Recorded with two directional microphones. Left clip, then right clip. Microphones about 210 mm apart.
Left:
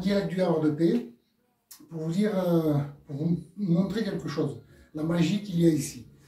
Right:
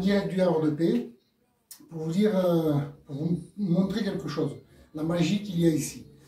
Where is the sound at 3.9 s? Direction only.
Centre (ahead or behind).